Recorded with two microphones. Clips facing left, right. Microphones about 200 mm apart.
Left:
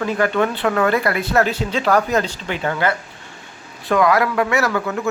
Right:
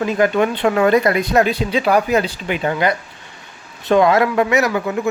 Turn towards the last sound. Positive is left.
turn(degrees=-15)  # may be behind; listen again after turning